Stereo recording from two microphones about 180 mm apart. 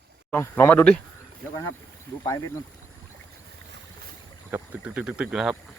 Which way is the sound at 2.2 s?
20° left (ahead or behind).